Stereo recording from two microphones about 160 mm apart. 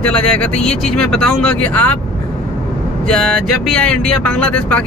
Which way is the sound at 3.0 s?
5° left (ahead or behind).